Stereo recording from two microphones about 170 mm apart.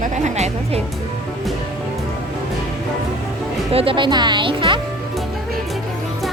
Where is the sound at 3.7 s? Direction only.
30° right (ahead or behind).